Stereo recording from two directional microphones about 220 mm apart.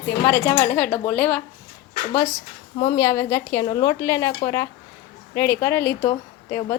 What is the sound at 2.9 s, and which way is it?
A woman's voice, 15° left (ahead or behind).